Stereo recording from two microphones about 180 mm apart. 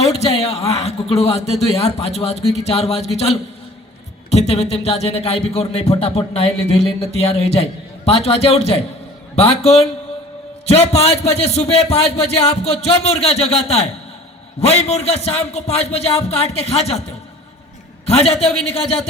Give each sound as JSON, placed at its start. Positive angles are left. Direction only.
{"t": 0.0, "sound": "speech", "side_deg": 35}
{"t": 18.1, "sound": "speech", "side_deg": 35}